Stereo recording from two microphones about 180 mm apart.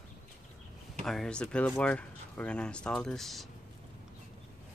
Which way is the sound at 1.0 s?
5° left (ahead or behind).